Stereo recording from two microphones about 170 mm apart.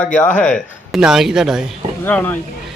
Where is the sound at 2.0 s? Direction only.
10° left (ahead or behind).